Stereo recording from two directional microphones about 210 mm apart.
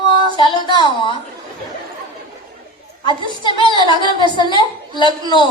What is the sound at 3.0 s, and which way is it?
A woman's voice, 20° left (ahead or behind).